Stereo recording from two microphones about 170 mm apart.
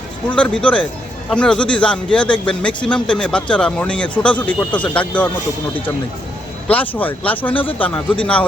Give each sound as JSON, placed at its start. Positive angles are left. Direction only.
{"t": 0.3, "sound": "a man's voice", "side_deg": 5}
{"t": 6.7, "sound": "a man's voice", "side_deg": 10}